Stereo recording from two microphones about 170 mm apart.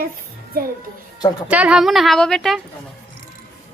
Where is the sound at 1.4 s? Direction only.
5° right (ahead or behind).